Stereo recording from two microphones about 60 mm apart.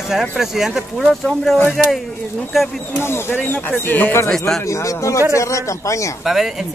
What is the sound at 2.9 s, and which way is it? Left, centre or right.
Speech, left.